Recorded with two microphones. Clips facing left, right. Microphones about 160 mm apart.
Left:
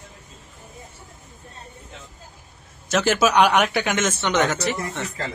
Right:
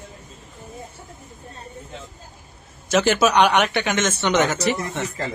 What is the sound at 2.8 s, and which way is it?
A man's voice, centre (ahead or behind).